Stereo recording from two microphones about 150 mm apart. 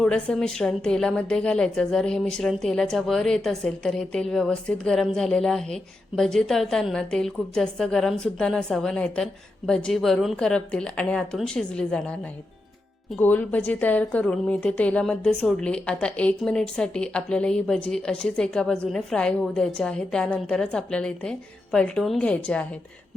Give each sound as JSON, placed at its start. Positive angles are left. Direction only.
{"t": 0.0, "sound": "a woman's voice", "side_deg": 5}